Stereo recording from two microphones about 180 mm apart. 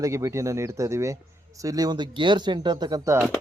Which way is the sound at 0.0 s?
15° right (ahead or behind).